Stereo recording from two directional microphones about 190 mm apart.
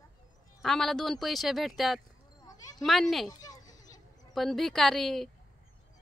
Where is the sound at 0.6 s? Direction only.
Centre (ahead or behind).